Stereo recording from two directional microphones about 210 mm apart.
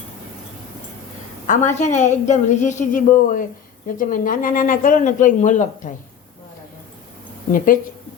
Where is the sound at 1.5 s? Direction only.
35° left (ahead or behind).